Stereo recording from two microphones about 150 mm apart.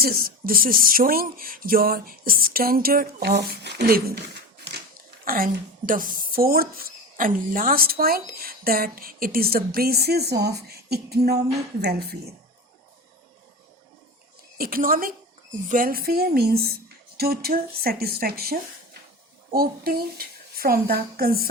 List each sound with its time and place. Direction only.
0.0 s speech: 80° right
5.2 s speech: 75° right (ahead or behind); by 12.1 s 90° right
14.6 s speech: 75° right (ahead or behind)